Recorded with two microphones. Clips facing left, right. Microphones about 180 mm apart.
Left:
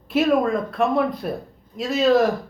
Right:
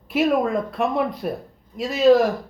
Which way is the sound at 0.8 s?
15° right (ahead or behind).